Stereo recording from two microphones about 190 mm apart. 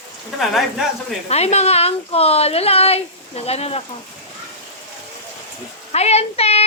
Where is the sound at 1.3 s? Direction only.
35° left (ahead or behind).